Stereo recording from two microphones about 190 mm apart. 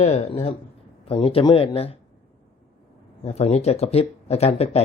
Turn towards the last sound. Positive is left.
turn(degrees=35)  # may be behind; listen again after turning